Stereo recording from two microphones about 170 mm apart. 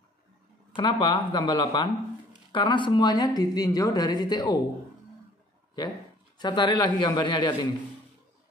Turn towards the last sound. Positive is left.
turn(degrees=25)  # may be behind; listen again after turning